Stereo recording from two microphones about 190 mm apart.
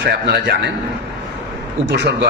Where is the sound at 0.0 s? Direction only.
60° right (ahead or behind).